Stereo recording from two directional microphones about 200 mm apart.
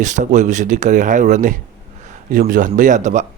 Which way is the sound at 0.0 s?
40° right (ahead or behind).